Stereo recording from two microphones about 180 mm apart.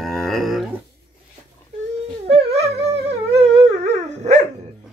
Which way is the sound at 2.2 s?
35° right (ahead or behind).